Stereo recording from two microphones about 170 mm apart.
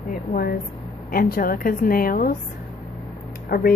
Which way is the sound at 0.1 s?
60° left (ahead or behind).